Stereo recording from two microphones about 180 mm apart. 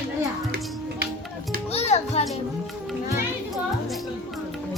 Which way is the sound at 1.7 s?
35° left (ahead or behind).